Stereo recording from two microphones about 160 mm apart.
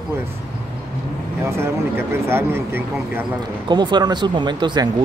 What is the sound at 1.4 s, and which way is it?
A man's voice, 15° right (ahead or behind).